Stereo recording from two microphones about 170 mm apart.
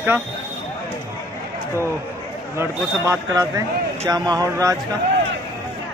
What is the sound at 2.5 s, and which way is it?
A man's voice, 15° right (ahead or behind).